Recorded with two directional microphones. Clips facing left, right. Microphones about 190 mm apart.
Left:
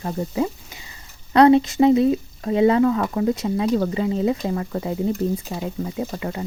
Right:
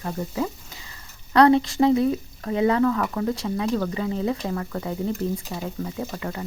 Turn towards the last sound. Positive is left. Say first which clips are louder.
# left 3 dB
turn(degrees=20)  # may be behind; listen again after turning